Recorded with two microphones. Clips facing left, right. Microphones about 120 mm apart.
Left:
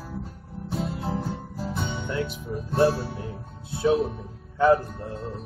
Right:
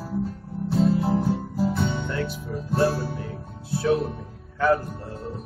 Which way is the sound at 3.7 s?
20° left (ahead or behind).